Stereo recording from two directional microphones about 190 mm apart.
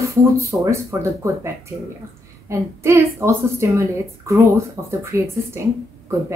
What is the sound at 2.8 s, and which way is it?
Speech, 15° right (ahead or behind).